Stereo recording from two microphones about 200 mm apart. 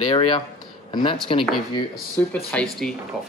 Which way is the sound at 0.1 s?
25° left (ahead or behind).